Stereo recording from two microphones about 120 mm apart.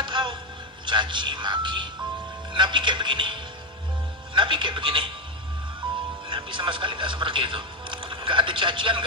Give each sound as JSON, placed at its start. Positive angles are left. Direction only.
{"t": 0.0, "sound": "a sound", "side_deg": -40}
{"t": 0.8, "sound": "a man's voice", "side_deg": -40}
{"t": 5.8, "sound": "music", "side_deg": -40}
{"t": 6.2, "sound": "speech", "side_deg": -45}